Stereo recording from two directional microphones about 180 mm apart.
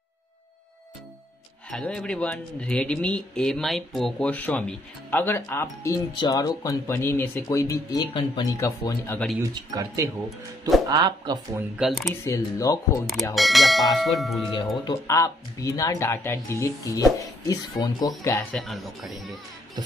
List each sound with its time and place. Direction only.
1.7 s speech: 5° left (ahead or behind)
9.4 s speech: 20° right (ahead or behind)
11.8 s speech: centre (ahead or behind)
12.1 s speech: 15° left (ahead or behind)
13.1 s speech: centre (ahead or behind)
14.9 s speech: 20° left (ahead or behind)
18.5 s speech: centre (ahead or behind)